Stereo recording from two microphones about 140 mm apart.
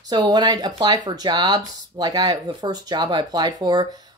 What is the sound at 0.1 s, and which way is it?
Speech, 30° right (ahead or behind).